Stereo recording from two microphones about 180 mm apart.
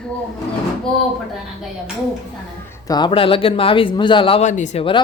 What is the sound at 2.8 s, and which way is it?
Speech, 25° left (ahead or behind).